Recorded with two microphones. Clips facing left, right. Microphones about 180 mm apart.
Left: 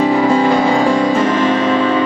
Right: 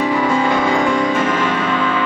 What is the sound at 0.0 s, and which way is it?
Music, 35° left (ahead or behind).